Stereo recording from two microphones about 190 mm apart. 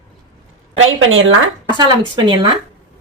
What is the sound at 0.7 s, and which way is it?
Speech, 90° right.